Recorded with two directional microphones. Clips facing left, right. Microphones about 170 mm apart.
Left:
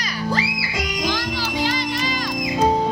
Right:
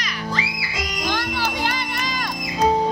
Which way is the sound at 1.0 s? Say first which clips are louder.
Right 2 dB; 55° right (ahead or behind).